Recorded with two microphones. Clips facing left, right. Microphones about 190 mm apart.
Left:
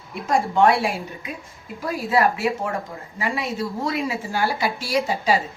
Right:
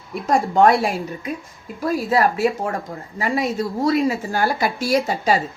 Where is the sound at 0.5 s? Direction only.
40° right (ahead or behind).